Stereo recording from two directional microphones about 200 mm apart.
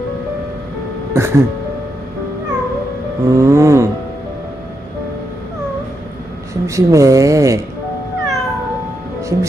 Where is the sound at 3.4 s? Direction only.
15° right (ahead or behind).